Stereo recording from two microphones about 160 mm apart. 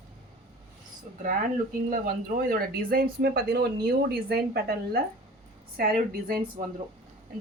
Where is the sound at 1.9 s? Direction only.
65° right (ahead or behind).